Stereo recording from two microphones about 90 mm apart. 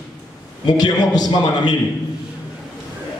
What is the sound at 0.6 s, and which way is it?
A man's voice, 50° left (ahead or behind).